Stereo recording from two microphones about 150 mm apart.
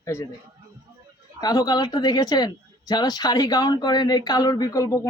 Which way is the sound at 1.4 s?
25° left (ahead or behind).